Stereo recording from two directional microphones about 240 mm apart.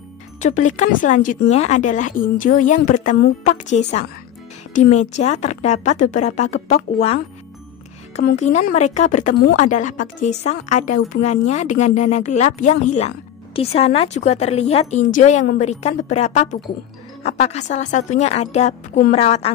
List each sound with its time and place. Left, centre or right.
0.4 s a woman's voice: left
8.2 s a woman's voice: left